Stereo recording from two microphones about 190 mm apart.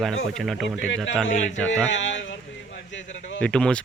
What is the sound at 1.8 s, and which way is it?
Speech, 75° left (ahead or behind).